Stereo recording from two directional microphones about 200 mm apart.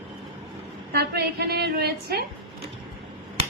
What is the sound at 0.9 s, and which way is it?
A woman's voice, 55° right (ahead or behind).